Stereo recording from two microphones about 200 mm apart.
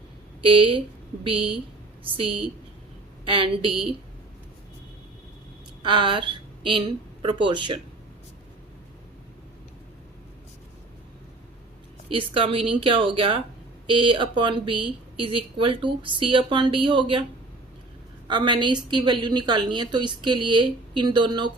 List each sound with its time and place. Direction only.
0.4 s speech: 25° right (ahead or behind)
5.8 s a woman's voice: 25° right (ahead or behind)
12.1 s speech: 25° right (ahead or behind)
18.3 s speech: 25° right (ahead or behind)